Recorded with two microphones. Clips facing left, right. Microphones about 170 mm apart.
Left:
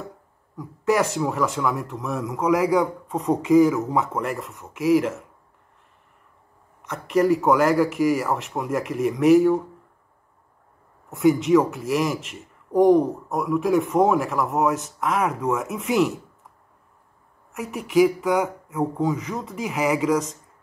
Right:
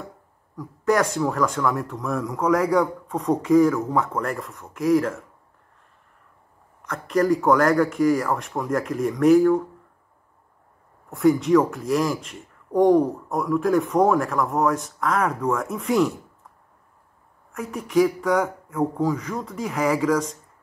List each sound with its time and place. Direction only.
0.6 s speech: 5° left (ahead or behind)
6.9 s speech: 5° left (ahead or behind)
11.1 s speech: centre (ahead or behind)
17.5 s speech: 5° left (ahead or behind)